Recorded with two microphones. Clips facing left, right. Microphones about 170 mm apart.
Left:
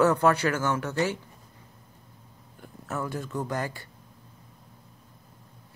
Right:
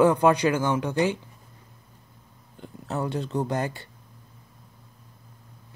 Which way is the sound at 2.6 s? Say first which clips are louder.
Right 3 dB; 20° right (ahead or behind).